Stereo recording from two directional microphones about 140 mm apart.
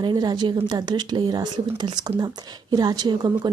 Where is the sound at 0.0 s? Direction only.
30° right (ahead or behind).